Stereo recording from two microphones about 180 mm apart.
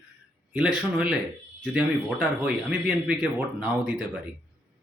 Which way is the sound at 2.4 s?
10° right (ahead or behind).